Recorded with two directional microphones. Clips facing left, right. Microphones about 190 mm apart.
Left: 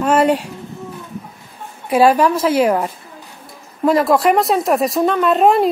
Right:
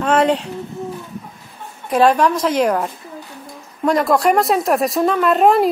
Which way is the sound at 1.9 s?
10° left (ahead or behind).